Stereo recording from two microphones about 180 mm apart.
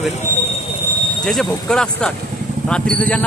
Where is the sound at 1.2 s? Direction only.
Centre (ahead or behind).